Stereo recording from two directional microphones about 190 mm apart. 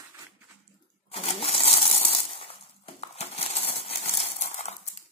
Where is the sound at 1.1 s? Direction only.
30° left (ahead or behind).